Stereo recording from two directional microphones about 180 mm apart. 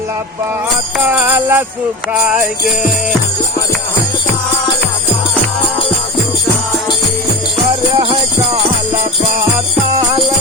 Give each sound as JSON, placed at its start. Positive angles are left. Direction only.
{"t": 1.0, "sound": "jingle bell", "side_deg": -10}
{"t": 7.9, "sound": "music", "side_deg": -20}